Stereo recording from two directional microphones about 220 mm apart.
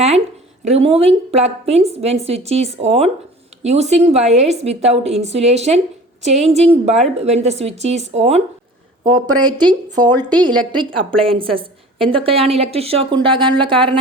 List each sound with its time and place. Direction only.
0.6 s a woman's voice: 30° right (ahead or behind)
9.4 s a woman's voice: 20° right (ahead or behind)